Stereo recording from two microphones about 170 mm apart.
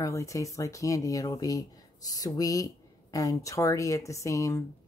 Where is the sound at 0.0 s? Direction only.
20° left (ahead or behind).